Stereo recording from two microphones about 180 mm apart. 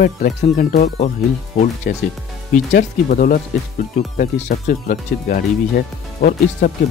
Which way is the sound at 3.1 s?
50° left (ahead or behind).